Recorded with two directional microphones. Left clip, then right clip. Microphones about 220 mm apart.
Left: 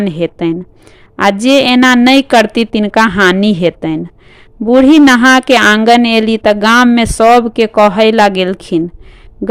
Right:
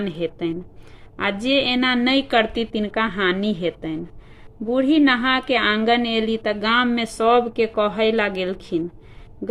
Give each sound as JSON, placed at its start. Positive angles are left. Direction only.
{"t": 0.0, "sound": "a woman's voice", "side_deg": 40}